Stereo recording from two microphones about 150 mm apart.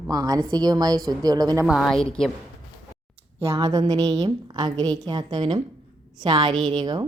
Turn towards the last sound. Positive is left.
turn(degrees=-30)  # may be behind; listen again after turning